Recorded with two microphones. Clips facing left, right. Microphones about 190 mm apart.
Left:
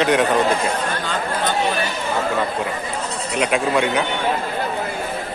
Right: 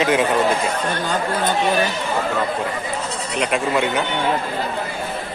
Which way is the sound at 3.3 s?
Centre (ahead or behind).